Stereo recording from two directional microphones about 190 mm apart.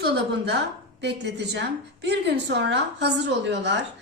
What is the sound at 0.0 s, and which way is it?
A woman's voice, 60° right (ahead or behind).